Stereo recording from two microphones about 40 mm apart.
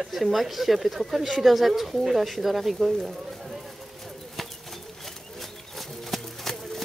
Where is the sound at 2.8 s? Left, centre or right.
Centre.